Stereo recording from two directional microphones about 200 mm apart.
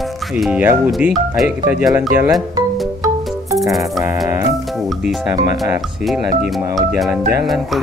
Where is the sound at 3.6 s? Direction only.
Centre (ahead or behind).